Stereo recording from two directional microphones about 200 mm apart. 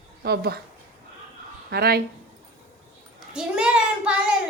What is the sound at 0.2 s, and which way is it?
Speech, 50° right (ahead or behind).